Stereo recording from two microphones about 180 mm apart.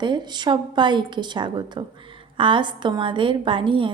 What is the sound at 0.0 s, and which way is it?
A woman's voice, 25° right (ahead or behind).